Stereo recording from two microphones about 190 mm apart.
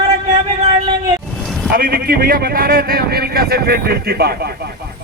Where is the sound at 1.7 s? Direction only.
50° right (ahead or behind).